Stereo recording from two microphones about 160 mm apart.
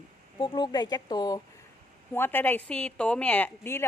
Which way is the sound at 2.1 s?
15° left (ahead or behind).